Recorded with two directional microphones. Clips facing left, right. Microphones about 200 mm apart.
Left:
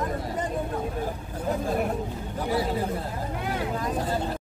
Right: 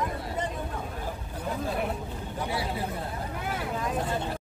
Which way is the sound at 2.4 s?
40° left (ahead or behind).